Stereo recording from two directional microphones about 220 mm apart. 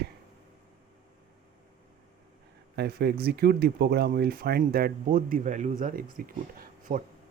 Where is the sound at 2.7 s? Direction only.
45° right (ahead or behind).